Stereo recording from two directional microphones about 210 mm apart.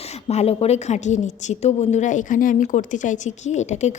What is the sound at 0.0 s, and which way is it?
A woman's voice, 30° left (ahead or behind).